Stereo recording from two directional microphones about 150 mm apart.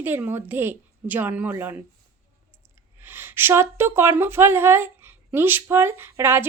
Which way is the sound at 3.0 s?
15° right (ahead or behind).